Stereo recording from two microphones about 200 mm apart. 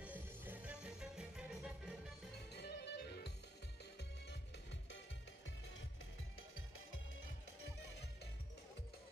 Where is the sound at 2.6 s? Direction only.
55° left (ahead or behind).